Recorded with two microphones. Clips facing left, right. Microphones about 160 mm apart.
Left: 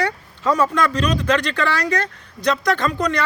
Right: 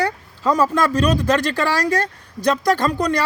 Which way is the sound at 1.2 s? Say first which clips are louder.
Right 1 dB; 40° right (ahead or behind).